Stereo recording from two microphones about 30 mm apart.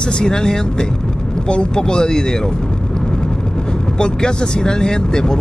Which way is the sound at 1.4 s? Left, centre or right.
Left.